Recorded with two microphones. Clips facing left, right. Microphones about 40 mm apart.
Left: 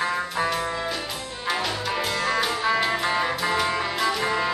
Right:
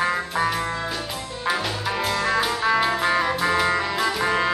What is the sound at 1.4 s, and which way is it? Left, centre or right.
Music, centre.